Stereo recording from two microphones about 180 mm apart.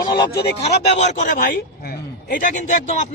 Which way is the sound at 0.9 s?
40° left (ahead or behind).